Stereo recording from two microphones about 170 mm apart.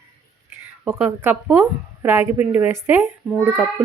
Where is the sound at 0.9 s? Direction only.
10° right (ahead or behind).